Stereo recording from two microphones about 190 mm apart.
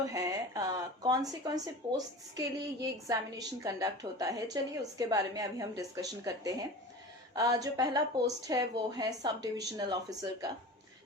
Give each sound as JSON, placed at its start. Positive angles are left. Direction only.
{"t": 0.0, "sound": "a woman's voice", "side_deg": -20}